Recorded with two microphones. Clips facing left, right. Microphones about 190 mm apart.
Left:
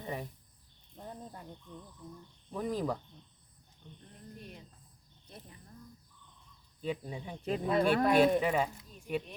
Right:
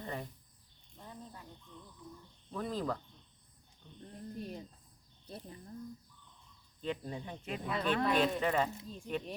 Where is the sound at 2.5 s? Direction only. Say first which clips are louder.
Left 3 dB; 15° left (ahead or behind).